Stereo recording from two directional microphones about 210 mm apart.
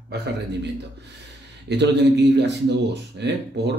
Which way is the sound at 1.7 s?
55° right (ahead or behind).